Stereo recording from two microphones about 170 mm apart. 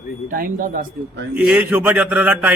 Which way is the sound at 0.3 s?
55° right (ahead or behind).